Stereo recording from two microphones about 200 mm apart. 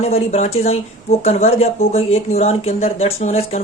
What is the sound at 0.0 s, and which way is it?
Speech, 30° left (ahead or behind).